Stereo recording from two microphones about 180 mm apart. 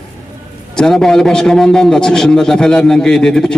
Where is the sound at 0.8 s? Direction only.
5° left (ahead or behind).